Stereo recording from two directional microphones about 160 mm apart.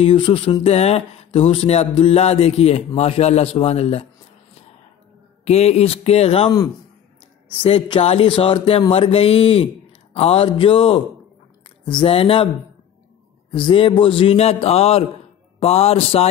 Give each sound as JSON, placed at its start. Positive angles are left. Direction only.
{"t": 0.0, "sound": "speech", "side_deg": 35}
{"t": 5.4, "sound": "speech", "side_deg": 40}
{"t": 7.6, "sound": "speech", "side_deg": 35}
{"t": 13.5, "sound": "speech", "side_deg": 30}